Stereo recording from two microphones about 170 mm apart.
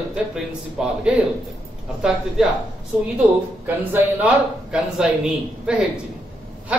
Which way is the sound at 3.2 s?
10° right (ahead or behind).